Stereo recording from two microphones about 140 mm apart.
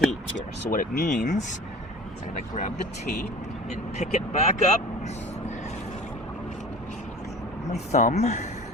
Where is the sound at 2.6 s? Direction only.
55° left (ahead or behind).